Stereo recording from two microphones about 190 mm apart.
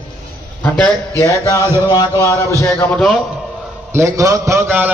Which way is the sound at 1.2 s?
15° left (ahead or behind).